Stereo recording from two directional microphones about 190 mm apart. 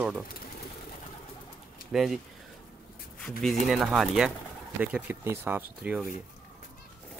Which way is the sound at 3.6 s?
Centre (ahead or behind).